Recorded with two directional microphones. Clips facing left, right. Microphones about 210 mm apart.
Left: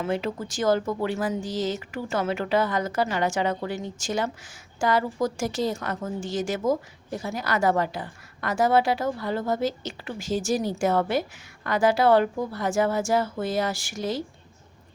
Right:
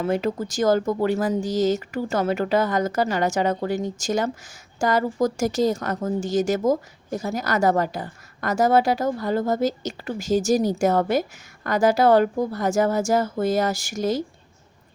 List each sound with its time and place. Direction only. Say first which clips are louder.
0.0 s speech: right 4 dB; 45° right (ahead or behind)